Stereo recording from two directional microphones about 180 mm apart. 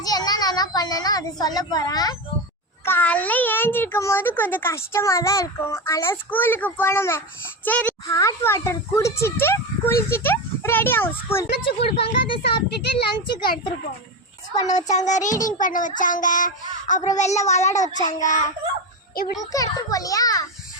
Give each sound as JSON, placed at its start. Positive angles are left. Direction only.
{"t": 0.0, "sound": "a child's voice", "side_deg": 20}
{"t": 2.8, "sound": "a child's voice", "side_deg": 10}
{"t": 11.6, "sound": "a child's voice", "side_deg": 30}
{"t": 12.4, "sound": "a child's voice", "side_deg": 65}
{"t": 14.7, "sound": "speech", "side_deg": 40}
{"t": 17.9, "sound": "a child's voice", "side_deg": 20}
{"t": 18.2, "sound": "speech", "side_deg": 45}
{"t": 19.5, "sound": "a child's voice", "side_deg": 20}